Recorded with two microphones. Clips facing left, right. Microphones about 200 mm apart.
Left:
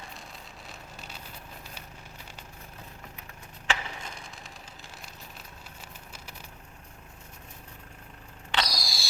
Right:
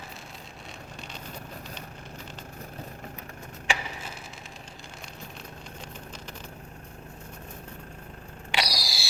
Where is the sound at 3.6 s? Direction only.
5° right (ahead or behind).